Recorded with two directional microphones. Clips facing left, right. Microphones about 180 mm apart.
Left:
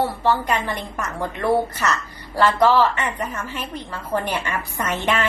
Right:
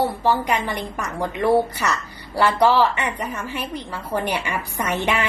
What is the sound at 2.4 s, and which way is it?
A woman's voice, 15° right (ahead or behind).